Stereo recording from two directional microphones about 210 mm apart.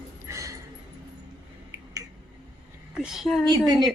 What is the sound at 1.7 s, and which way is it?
Finger snapping, 15° right (ahead or behind).